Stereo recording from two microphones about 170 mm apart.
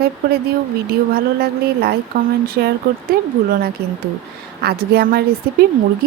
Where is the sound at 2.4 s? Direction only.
60° right (ahead or behind).